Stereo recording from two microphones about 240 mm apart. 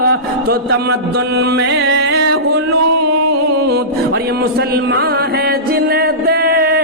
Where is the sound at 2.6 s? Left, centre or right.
Right.